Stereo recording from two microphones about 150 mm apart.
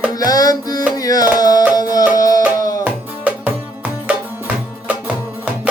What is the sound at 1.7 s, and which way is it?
Music, 25° left (ahead or behind).